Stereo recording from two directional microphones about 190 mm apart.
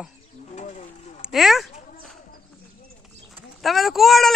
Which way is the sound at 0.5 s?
40° left (ahead or behind).